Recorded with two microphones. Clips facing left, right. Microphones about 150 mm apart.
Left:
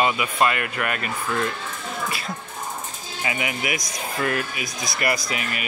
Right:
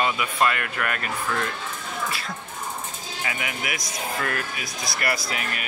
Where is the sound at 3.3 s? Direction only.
5° left (ahead or behind).